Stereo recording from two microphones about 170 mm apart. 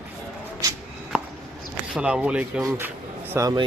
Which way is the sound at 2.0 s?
5° right (ahead or behind).